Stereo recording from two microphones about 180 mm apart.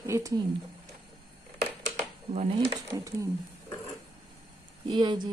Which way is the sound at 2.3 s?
35° right (ahead or behind).